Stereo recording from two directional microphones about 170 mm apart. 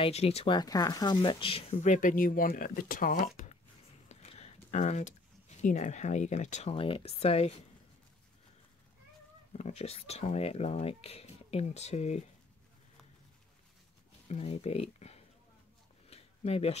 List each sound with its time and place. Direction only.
0.0 s speech: 35° left (ahead or behind)
0.6 s speech: 25° left (ahead or behind); by 3.5 s 50° left (ahead or behind)
4.1 s a sound: 40° left (ahead or behind)
4.6 s speech: 45° left (ahead or behind)
9.5 s speech: 40° left (ahead or behind)
14.3 s speech: 40° left (ahead or behind)
16.1 s a sound: 35° left (ahead or behind)